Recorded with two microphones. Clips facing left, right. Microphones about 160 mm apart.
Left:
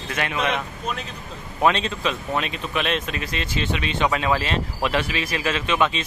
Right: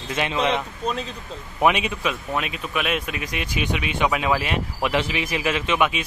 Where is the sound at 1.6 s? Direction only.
15° right (ahead or behind).